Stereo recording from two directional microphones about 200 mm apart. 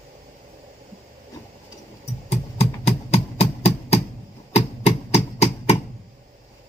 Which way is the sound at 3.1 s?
30° left (ahead or behind).